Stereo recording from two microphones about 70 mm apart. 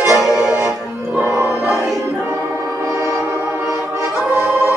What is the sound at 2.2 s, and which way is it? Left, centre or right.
Music, right.